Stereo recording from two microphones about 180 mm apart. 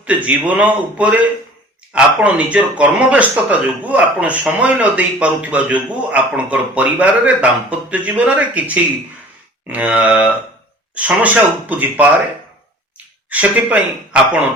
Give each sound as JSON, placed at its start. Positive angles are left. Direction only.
{"t": 0.0, "sound": "speech", "side_deg": -10}
{"t": 13.3, "sound": "speech", "side_deg": -5}